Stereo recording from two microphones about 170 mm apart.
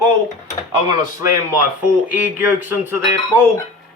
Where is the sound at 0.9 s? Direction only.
20° right (ahead or behind).